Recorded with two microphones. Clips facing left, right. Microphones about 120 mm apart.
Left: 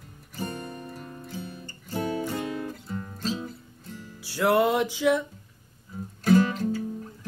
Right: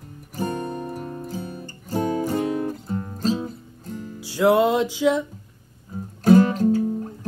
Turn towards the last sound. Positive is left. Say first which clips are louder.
# right 9 dB
turn(degrees=-40)  # may be behind; listen again after turning